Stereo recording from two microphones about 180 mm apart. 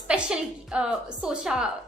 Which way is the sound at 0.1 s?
5° right (ahead or behind).